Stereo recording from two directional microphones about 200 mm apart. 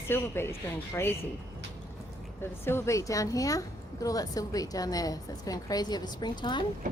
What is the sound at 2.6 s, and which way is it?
A woman's voice, 15° left (ahead or behind).